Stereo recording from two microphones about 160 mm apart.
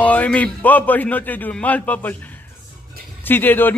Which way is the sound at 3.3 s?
10° left (ahead or behind).